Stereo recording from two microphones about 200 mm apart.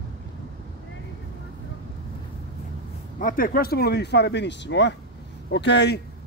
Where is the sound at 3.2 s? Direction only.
45° left (ahead or behind).